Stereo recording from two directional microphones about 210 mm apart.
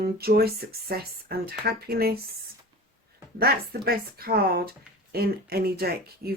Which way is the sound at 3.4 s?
45° right (ahead or behind).